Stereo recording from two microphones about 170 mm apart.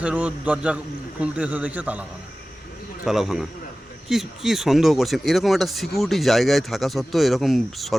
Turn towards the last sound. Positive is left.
turn(degrees=0)  # may be behind; listen again after turning